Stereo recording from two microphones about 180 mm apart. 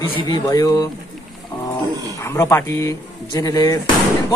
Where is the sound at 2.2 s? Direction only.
15° left (ahead or behind).